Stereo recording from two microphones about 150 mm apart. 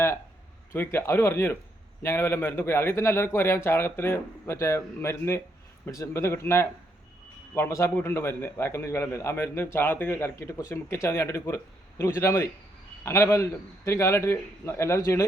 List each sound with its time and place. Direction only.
0.7 s a man's voice: 15° left (ahead or behind)